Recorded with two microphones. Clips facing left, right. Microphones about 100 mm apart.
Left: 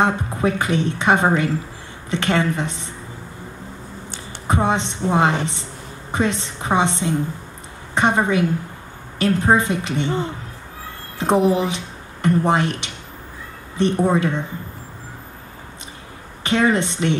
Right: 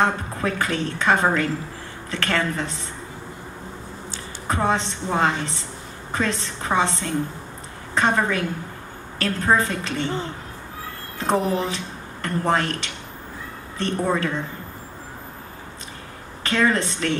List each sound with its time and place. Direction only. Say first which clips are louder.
0.0 s a woman's voice: left 3 dB; 20° left (ahead or behind)
4.5 s a woman's voice: left 2 dB; 20° left (ahead or behind)
16.4 s a woman's voice: left 3 dB; 20° left (ahead or behind)